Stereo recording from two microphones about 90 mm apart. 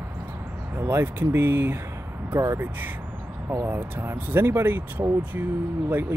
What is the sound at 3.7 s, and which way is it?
Speech, 25° right (ahead or behind).